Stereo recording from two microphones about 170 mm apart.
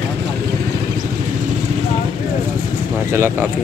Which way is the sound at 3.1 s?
15° right (ahead or behind).